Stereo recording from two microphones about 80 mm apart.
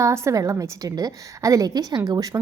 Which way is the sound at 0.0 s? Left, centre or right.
Right.